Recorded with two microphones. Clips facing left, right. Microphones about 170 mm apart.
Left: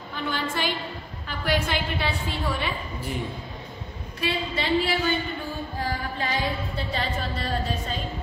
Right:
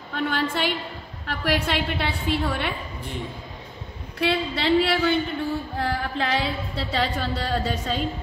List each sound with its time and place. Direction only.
0.1 s a woman's voice: 60° right (ahead or behind)
4.2 s a woman's voice: 70° right (ahead or behind)
5.8 s a sound: 75° right (ahead or behind)